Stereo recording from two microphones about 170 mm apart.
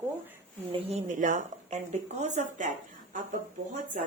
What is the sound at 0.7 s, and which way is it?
A woman's voice, 40° right (ahead or behind).